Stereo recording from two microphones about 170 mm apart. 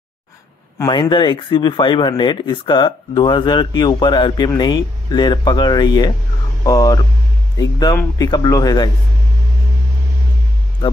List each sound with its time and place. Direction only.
0.7 s speech: 25° left (ahead or behind)